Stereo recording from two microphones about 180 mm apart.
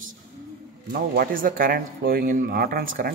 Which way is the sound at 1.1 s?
50° right (ahead or behind).